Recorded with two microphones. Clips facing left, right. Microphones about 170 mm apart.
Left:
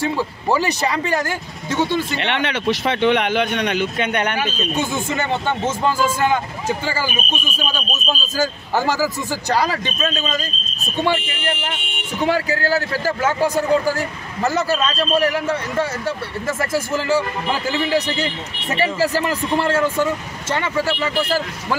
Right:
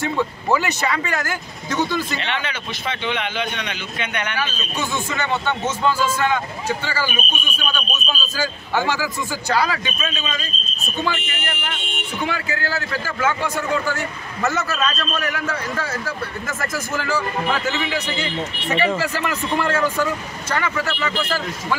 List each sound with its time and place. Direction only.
0.0 s a man's voice: 30° left (ahead or behind)
2.1 s speech: 65° left (ahead or behind)
3.5 s speech: 40° left (ahead or behind)
7.4 s a man's voice: 40° left (ahead or behind)
11.0 s a man's voice: 30° left (ahead or behind)